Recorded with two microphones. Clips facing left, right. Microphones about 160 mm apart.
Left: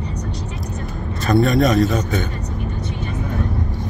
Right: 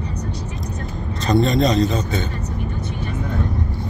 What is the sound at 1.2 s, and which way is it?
Speech, 20° right (ahead or behind).